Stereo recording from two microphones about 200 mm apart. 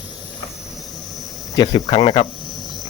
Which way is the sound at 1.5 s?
25° left (ahead or behind).